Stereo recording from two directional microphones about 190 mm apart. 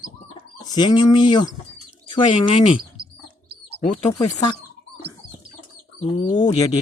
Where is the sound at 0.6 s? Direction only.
20° left (ahead or behind).